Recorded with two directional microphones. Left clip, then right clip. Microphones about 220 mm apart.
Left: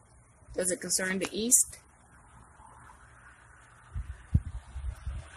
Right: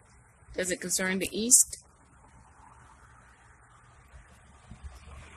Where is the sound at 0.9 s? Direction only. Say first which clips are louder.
Right 1 dB; centre (ahead or behind).